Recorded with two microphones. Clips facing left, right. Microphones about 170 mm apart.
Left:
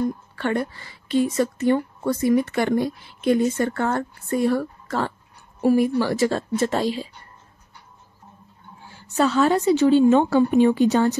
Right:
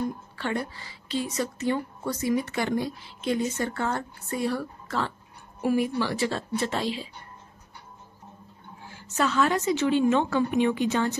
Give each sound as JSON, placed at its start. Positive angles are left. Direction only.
{"t": 0.4, "sound": "a woman's voice", "side_deg": 55}
{"t": 8.9, "sound": "a woman's voice", "side_deg": 35}